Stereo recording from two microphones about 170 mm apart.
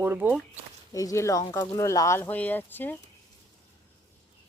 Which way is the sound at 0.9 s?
20° left (ahead or behind).